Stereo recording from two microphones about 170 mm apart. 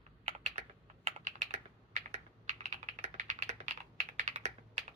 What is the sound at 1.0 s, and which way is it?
Computer keyboard, 40° right (ahead or behind).